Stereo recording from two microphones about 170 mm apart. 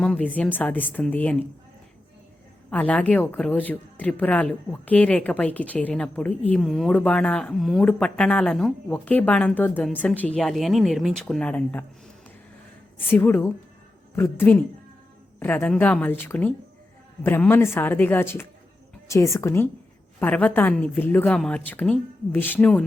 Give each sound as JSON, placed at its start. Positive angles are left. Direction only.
{"t": 0.0, "sound": "speech", "side_deg": 5}
{"t": 2.6, "sound": "speech", "side_deg": 10}
{"t": 13.0, "sound": "speech", "side_deg": 10}